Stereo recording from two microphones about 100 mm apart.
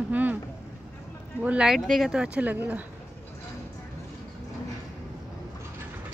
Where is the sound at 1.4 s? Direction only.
10° right (ahead or behind).